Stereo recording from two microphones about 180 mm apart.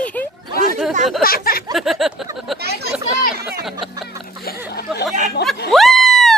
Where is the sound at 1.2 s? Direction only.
55° left (ahead or behind).